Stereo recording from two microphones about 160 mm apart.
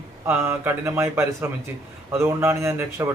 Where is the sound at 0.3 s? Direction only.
15° right (ahead or behind).